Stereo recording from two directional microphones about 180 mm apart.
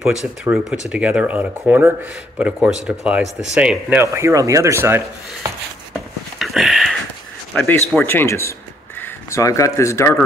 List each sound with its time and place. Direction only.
0.4 s speech: 5° right (ahead or behind)
4.0 s speech: 15° right (ahead or behind)
6.4 s a sound: centre (ahead or behind)
7.5 s a man's voice: 10° left (ahead or behind)